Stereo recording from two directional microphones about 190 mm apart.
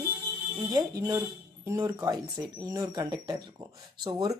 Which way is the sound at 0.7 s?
15° right (ahead or behind).